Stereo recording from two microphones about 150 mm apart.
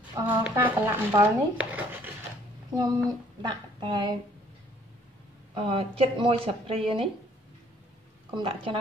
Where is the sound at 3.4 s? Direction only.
30° right (ahead or behind).